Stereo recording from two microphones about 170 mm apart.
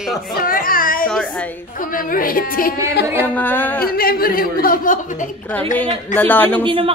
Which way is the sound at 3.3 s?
10° left (ahead or behind).